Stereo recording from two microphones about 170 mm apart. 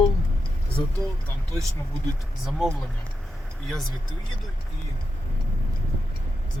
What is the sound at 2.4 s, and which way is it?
Speech, centre (ahead or behind).